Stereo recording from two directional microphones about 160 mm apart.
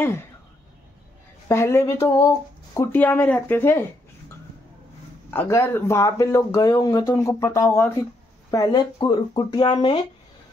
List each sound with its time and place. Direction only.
1.5 s speech: 15° left (ahead or behind)
5.3 s speech: 15° left (ahead or behind); by 9.9 s 30° left (ahead or behind)